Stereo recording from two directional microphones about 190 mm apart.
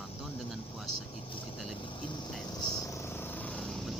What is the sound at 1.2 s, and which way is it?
Vehicle, 25° left (ahead or behind).